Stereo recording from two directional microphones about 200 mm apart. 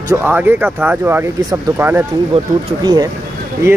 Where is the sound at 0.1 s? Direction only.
10° right (ahead or behind).